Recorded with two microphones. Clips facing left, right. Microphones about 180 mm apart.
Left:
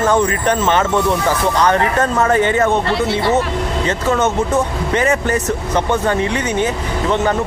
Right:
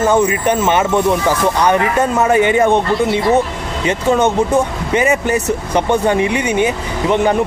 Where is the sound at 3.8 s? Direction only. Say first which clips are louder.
Right 4 dB; 15° right (ahead or behind).